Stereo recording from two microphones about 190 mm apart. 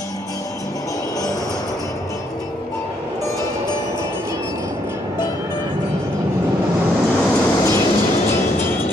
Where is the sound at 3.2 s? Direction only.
20° left (ahead or behind).